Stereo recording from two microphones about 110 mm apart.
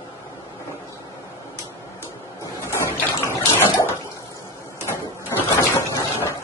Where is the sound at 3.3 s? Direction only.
25° left (ahead or behind).